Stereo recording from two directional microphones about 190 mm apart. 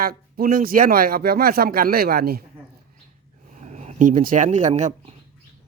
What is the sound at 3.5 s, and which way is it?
Speech, 40° right (ahead or behind).